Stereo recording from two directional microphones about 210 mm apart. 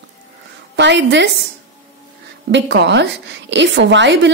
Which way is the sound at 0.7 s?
55° right (ahead or behind).